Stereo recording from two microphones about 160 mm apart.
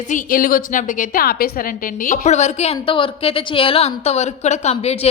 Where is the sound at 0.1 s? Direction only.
60° left (ahead or behind).